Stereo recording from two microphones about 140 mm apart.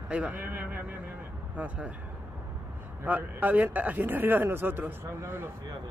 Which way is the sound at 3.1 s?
10° right (ahead or behind).